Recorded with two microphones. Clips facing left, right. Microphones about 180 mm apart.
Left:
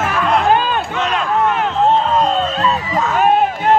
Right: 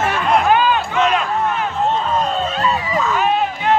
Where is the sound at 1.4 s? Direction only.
60° left (ahead or behind).